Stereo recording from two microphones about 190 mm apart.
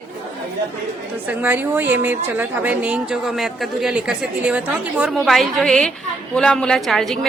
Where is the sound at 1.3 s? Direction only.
10° right (ahead or behind).